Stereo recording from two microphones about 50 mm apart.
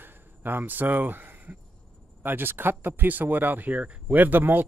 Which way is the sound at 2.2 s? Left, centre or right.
Right.